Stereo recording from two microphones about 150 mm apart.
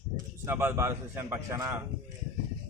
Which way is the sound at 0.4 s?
15° right (ahead or behind).